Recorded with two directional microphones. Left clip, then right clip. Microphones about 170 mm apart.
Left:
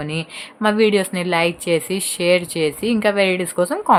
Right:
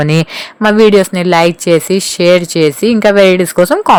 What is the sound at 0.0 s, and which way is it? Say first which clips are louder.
Speech: right 13 dB; 55° right (ahead or behind).